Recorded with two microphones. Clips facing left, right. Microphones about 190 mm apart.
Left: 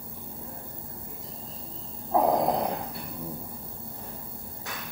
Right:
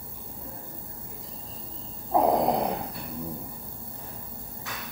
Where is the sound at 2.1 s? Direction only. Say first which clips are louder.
Right 1 dB; centre (ahead or behind).